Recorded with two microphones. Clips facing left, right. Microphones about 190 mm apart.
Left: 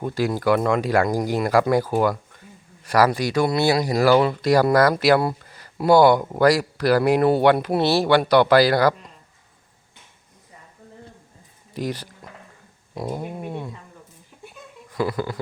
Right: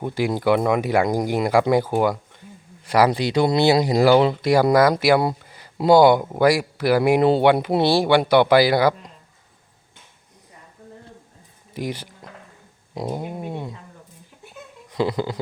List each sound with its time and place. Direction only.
0.0 s speech: 20° right (ahead or behind)
11.7 s speech: 15° right (ahead or behind)
14.8 s speech: 20° right (ahead or behind)